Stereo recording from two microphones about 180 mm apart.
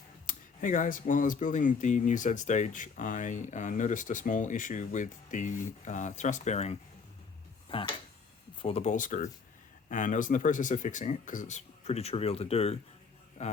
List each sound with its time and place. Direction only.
0.3 s a man's voice: 45° left (ahead or behind)